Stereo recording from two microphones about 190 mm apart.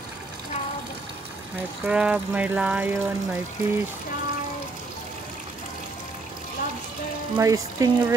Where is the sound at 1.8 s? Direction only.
5° right (ahead or behind).